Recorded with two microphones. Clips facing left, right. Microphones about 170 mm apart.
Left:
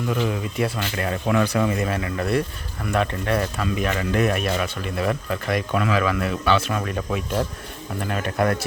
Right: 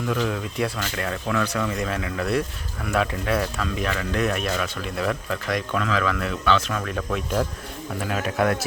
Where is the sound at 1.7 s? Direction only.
5° left (ahead or behind).